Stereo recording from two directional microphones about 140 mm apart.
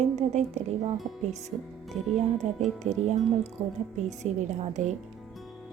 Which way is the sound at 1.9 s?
55° right (ahead or behind).